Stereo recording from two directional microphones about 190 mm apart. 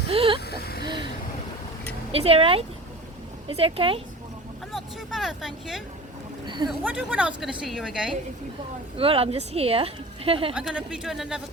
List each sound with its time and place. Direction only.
0.1 s a sound: 30° right (ahead or behind)
0.5 s vehicle: 55° left (ahead or behind)
2.1 s a woman's voice: 30° right (ahead or behind)
4.7 s speech: centre (ahead or behind)
9.0 s a woman's voice: 30° right (ahead or behind)
10.5 s speech: 5° right (ahead or behind)